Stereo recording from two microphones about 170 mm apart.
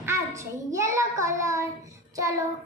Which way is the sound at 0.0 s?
15° right (ahead or behind).